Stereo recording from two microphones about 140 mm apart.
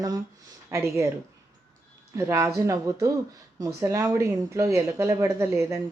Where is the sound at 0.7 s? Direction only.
15° right (ahead or behind).